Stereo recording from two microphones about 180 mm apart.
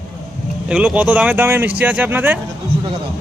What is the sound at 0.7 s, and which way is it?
Speech, 5° right (ahead or behind).